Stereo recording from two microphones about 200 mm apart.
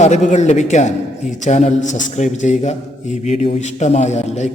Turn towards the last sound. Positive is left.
turn(degrees=35)  # may be behind; listen again after turning